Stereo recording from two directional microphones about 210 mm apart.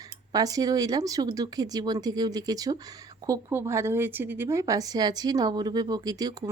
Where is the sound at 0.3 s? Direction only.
15° right (ahead or behind).